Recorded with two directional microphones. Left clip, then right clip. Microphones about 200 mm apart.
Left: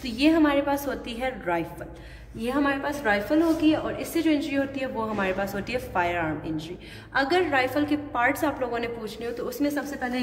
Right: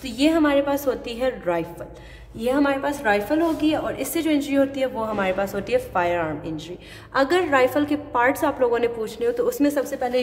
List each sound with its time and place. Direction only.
0.0 s a woman's voice: 50° right (ahead or behind)
2.4 s a woman's voice: 45° right (ahead or behind)